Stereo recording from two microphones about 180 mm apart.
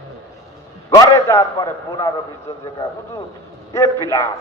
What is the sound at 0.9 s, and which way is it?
Speech, 15° left (ahead or behind).